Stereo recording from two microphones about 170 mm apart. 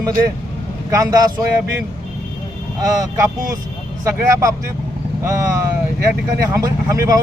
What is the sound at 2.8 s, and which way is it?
Speech, 20° right (ahead or behind).